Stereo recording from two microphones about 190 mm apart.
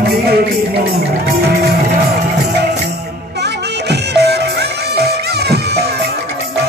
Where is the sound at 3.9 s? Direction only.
60° right (ahead or behind).